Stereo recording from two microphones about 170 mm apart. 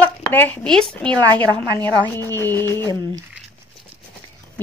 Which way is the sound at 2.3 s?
15° left (ahead or behind).